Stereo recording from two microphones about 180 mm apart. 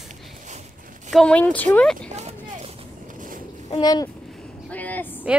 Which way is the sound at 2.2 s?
35° right (ahead or behind).